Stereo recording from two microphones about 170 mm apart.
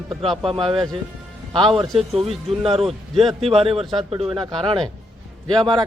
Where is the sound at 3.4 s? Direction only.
35° right (ahead or behind).